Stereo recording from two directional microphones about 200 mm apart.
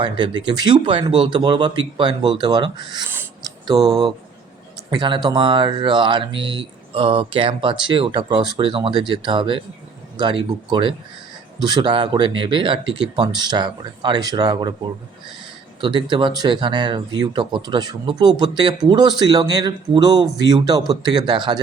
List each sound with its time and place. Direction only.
0.0 s speech: 25° right (ahead or behind)
3.1 s a sound: 15° right (ahead or behind)
3.8 s speech: 25° right (ahead or behind)
15.8 s speech: 25° right (ahead or behind)